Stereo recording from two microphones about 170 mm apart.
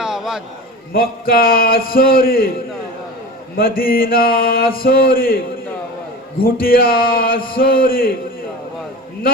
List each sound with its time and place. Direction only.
0.0 s a sound: 5° right (ahead or behind)
0.9 s mantra: 60° left (ahead or behind)
3.6 s mantra: 60° left (ahead or behind)
6.4 s mantra: 60° left (ahead or behind)